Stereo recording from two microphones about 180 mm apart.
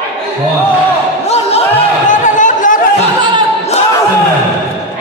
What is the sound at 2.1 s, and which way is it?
Chatter, 45° left (ahead or behind).